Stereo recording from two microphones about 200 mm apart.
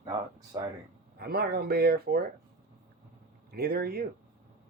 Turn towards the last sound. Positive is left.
turn(degrees=-50)  # may be behind; listen again after turning